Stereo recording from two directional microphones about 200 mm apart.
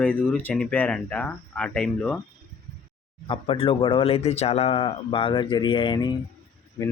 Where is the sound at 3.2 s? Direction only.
25° left (ahead or behind).